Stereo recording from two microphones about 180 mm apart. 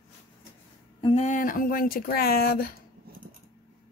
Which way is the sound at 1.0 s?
30° left (ahead or behind).